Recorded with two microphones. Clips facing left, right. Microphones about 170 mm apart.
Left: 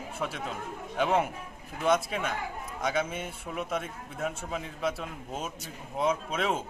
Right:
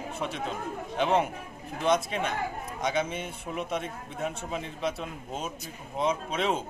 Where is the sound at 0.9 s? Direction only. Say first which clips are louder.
Right 1 dB; 5° left (ahead or behind).